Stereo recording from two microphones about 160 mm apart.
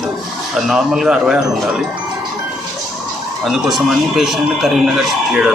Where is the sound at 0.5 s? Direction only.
Centre (ahead or behind).